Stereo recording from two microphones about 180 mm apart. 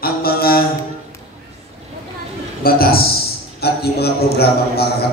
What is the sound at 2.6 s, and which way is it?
A man's voice, 55° left (ahead or behind).